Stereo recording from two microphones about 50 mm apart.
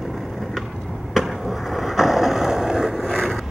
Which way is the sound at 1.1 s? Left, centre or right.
Centre.